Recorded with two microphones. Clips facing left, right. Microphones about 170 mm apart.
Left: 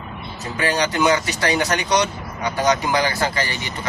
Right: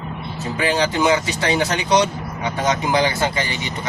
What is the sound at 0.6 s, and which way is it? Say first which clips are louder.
Speech: right 1 dB; 25° right (ahead or behind).